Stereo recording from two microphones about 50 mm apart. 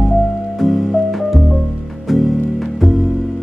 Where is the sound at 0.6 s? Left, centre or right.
Centre.